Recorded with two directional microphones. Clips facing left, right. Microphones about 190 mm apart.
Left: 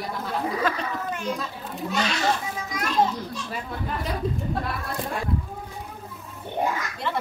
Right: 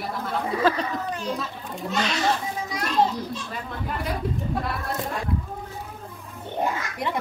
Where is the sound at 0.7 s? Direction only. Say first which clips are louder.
Right 9 dB; 30° right (ahead or behind).